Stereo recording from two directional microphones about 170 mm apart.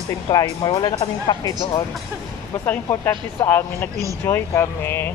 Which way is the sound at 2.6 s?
10° left (ahead or behind).